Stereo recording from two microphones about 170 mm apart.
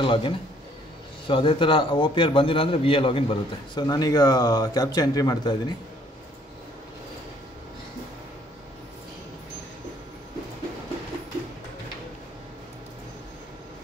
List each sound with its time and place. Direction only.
0.0 s a man's voice: 30° left (ahead or behind)